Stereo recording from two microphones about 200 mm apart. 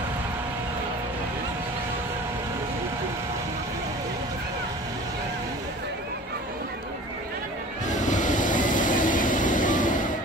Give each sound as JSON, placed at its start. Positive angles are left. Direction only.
{"t": 7.9, "sound": "vehicle", "side_deg": 40}